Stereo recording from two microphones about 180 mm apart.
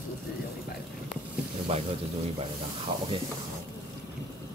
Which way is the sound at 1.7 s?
30° right (ahead or behind).